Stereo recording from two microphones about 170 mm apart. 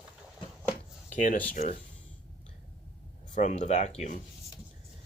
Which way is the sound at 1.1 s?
50° left (ahead or behind).